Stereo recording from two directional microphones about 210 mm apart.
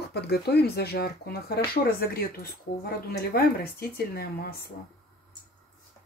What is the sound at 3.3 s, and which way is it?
Speech, 45° left (ahead or behind).